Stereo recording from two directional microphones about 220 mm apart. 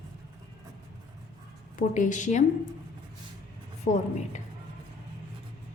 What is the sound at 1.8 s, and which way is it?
Speech, 35° left (ahead or behind).